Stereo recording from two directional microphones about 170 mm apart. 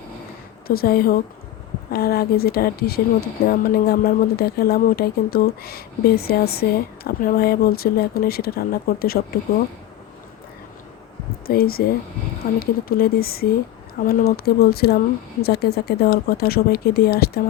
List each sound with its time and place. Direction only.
0.7 s speech: 60° left (ahead or behind)
11.4 s speech: 60° left (ahead or behind)